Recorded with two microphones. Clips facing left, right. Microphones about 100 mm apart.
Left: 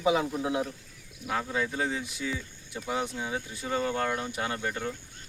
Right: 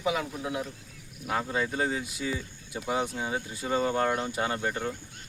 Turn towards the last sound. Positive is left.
turn(degrees=-15)  # may be behind; listen again after turning